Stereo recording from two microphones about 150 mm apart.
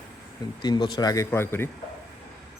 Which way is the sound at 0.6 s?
30° left (ahead or behind).